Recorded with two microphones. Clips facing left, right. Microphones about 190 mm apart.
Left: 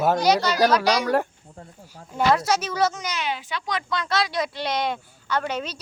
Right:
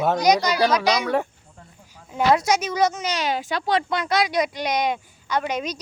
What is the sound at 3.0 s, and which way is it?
Speech, 35° right (ahead or behind).